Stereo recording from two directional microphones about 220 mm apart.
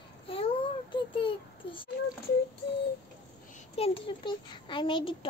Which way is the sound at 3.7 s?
25° left (ahead or behind).